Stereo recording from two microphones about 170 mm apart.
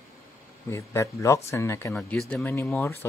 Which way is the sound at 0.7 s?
15° left (ahead or behind).